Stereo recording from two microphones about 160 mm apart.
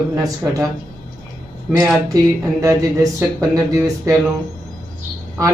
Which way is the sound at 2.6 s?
20° right (ahead or behind).